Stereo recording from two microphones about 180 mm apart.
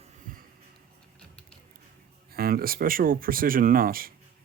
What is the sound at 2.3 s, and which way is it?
Speech, 55° right (ahead or behind).